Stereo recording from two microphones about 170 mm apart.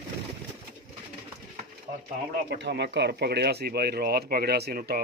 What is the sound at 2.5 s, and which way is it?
Speech, 80° right.